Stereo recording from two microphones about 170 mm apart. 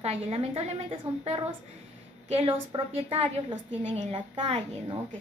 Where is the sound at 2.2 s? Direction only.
35° right (ahead or behind).